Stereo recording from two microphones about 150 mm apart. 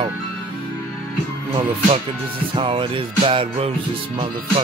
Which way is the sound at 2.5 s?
35° right (ahead or behind).